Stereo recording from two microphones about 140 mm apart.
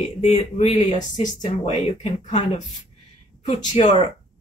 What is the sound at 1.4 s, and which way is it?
Speech, 45° left (ahead or behind).